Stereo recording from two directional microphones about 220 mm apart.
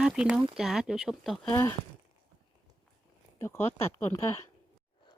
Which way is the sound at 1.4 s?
15° left (ahead or behind).